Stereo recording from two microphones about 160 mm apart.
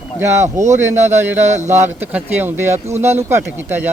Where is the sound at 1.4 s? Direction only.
45° right (ahead or behind).